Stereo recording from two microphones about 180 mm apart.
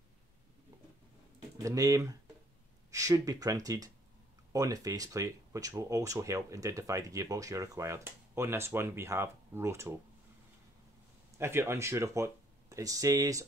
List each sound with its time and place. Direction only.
1.6 s speech: 20° right (ahead or behind)
11.3 s speech: 15° right (ahead or behind)